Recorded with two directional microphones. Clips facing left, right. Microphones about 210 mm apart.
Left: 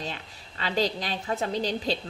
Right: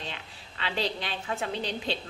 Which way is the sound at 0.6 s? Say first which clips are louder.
Left 4 dB; 40° left (ahead or behind).